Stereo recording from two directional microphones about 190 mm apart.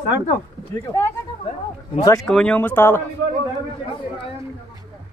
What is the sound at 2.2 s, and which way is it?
Speech, 5° left (ahead or behind).